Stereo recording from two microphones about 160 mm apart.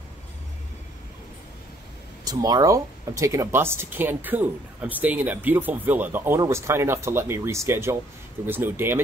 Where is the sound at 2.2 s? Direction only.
25° right (ahead or behind).